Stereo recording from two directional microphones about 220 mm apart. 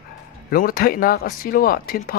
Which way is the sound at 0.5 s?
40° left (ahead or behind).